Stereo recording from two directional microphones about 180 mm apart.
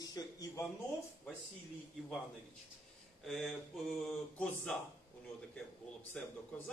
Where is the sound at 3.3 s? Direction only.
Centre (ahead or behind).